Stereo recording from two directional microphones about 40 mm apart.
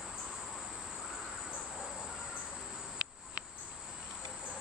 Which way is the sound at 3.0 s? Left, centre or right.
Right.